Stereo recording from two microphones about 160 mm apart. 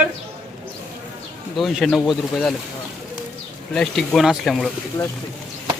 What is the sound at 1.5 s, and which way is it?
Speech, centre (ahead or behind).